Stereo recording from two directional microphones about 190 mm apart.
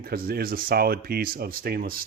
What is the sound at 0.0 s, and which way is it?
Speech, 50° right (ahead or behind).